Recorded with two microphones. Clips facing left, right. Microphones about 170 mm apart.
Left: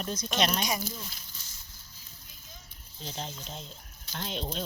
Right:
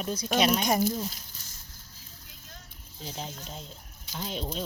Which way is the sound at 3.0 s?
10° right (ahead or behind).